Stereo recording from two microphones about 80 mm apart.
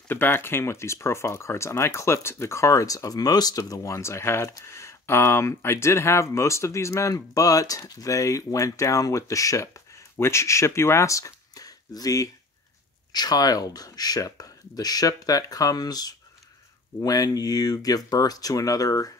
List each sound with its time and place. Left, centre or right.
0.1 s speech: left